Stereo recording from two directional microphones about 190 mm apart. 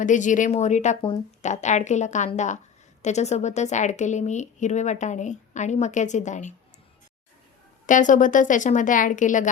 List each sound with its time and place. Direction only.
0.0 s a woman's voice: 40° left (ahead or behind)
7.9 s speech: 40° left (ahead or behind)